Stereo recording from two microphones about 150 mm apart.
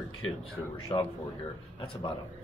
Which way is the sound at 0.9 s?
25° left (ahead or behind).